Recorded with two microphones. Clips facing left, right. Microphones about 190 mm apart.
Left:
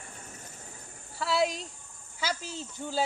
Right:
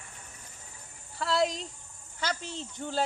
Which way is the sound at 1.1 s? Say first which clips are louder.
Even; 5° left (ahead or behind).